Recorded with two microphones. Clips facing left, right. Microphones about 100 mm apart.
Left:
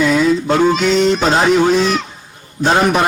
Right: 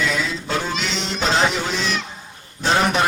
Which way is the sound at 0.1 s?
45° left (ahead or behind).